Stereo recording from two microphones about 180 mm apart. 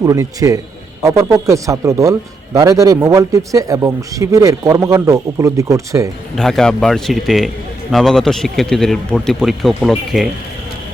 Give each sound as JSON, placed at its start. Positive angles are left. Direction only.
{"t": 0.0, "sound": "a man's voice", "side_deg": -20}
{"t": 6.3, "sound": "a man's voice", "side_deg": 0}